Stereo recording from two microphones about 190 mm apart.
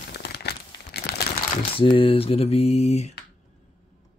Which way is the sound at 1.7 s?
25° left (ahead or behind).